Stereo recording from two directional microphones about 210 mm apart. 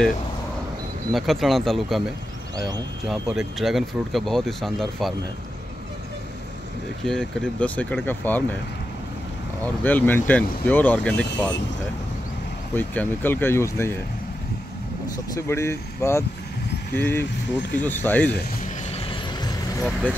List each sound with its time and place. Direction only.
1.1 s speech: centre (ahead or behind)
3.1 s speech: centre (ahead or behind)
7.1 s speech: 5° left (ahead or behind)
9.8 s speech: 10° left (ahead or behind)
12.7 s speech: 10° left (ahead or behind)
15.3 s speech: 15° left (ahead or behind)
18.9 s vehicle: 25° left (ahead or behind)